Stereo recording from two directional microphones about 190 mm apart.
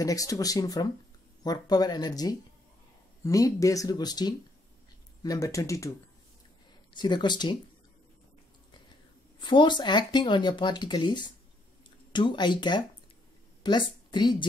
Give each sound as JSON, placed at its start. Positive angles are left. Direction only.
{"t": 0.0, "sound": "speech", "side_deg": 20}
{"t": 9.4, "sound": "a woman's voice", "side_deg": 25}